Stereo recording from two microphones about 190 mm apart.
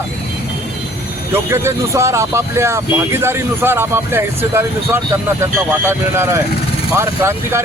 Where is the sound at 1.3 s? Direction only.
15° right (ahead or behind).